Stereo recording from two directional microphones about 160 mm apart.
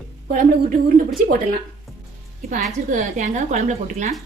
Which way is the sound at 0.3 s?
60° right (ahead or behind).